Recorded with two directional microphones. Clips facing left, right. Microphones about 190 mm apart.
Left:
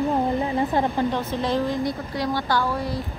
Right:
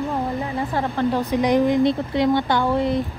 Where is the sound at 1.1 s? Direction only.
15° right (ahead or behind).